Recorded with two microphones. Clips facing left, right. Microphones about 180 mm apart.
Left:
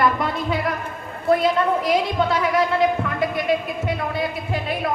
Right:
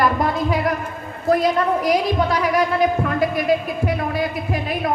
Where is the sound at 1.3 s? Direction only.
25° left (ahead or behind).